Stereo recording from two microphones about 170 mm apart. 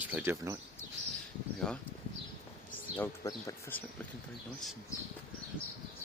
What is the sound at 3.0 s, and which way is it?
Speech, 15° left (ahead or behind).